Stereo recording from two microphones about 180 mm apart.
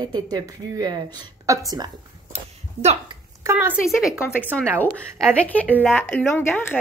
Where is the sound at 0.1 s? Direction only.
20° right (ahead or behind).